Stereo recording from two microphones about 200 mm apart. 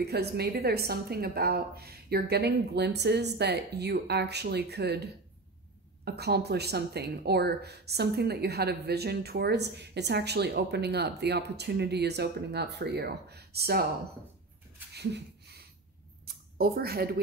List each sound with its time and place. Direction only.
0.0 s speech: 55° right (ahead or behind)
14.9 s a sound: 55° right (ahead or behind)
16.5 s speech: 50° right (ahead or behind)